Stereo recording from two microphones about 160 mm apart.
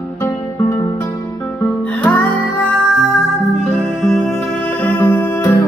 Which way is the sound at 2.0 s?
10° left (ahead or behind).